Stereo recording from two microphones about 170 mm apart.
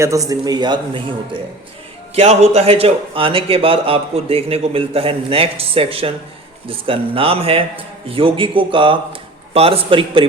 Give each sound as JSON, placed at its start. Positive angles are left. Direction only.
{"t": 0.0, "sound": "a man's voice", "side_deg": -20}
{"t": 2.1, "sound": "a man's voice", "side_deg": -40}